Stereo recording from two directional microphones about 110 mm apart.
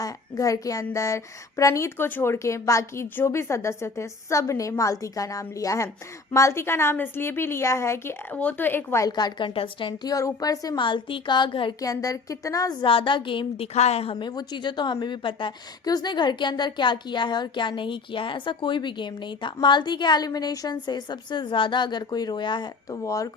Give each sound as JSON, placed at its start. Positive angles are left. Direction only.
{"t": 0.0, "sound": "a woman's voice", "side_deg": 30}
{"t": 9.0, "sound": "a woman's voice", "side_deg": 40}
{"t": 9.5, "sound": "a woman's voice", "side_deg": 55}
{"t": 10.0, "sound": "a woman's voice", "side_deg": 30}
{"t": 10.8, "sound": "a woman's voice", "side_deg": 50}
{"t": 11.8, "sound": "a woman's voice", "side_deg": 30}
{"t": 12.8, "sound": "a woman's voice", "side_deg": 50}
{"t": 13.7, "sound": "a woman's voice", "side_deg": 80}
{"t": 14.2, "sound": "a woman's voice", "side_deg": 45}
{"t": 23.0, "sound": "speech", "side_deg": 30}